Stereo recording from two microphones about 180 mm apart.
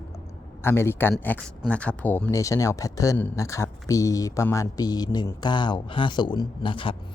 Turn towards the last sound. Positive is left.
turn(degrees=30)  # may be behind; listen again after turning